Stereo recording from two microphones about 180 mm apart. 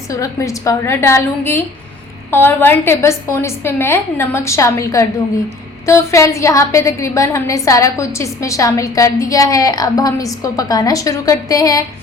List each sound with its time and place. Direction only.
0.1 s a woman's voice: 15° left (ahead or behind)